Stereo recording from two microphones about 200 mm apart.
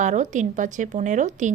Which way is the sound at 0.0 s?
35° right (ahead or behind).